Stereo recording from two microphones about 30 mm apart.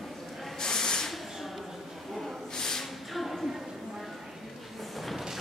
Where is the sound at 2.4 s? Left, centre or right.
Centre.